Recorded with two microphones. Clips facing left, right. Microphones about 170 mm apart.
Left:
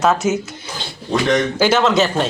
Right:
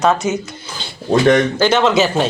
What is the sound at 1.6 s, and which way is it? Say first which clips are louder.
Speech: right 1 dB; 5° left (ahead or behind).